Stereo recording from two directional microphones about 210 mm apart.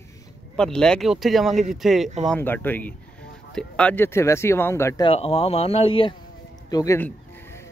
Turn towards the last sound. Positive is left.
turn(degrees=15)  # may be behind; listen again after turning